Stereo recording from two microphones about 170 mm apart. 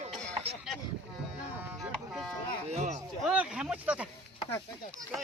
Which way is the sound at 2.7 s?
40° right (ahead or behind).